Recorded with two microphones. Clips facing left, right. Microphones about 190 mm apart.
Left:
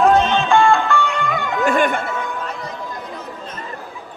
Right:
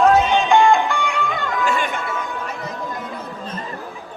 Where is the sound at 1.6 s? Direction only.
55° left (ahead or behind).